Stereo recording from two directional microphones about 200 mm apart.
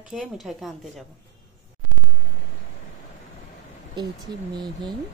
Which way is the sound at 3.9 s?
20° right (ahead or behind).